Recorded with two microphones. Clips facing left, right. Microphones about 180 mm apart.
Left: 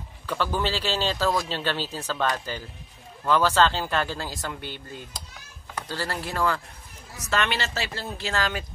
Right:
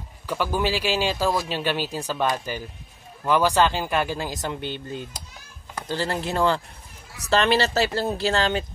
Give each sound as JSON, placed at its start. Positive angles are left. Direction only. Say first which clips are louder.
{"t": 0.3, "sound": "speech", "louder": "right 2 dB", "side_deg": -10}